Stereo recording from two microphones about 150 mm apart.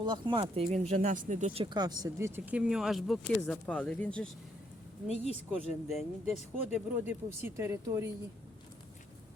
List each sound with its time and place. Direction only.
0.0 s speech: 30° right (ahead or behind); by 1.6 s 50° right (ahead or behind)
1.7 s speech: 25° right (ahead or behind); by 4.3 s 5° left (ahead or behind)
5.0 s speech: 45° left (ahead or behind)
5.5 s speech: centre (ahead or behind)
6.7 s speech: 10° right (ahead or behind)